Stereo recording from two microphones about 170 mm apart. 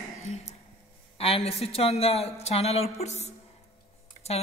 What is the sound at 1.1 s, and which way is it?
A woman's voice, 35° left (ahead or behind).